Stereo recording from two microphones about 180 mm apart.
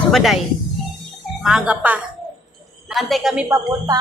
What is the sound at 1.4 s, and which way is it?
Speech, 5° right (ahead or behind).